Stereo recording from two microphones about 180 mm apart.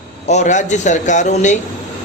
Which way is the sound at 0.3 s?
40° left (ahead or behind).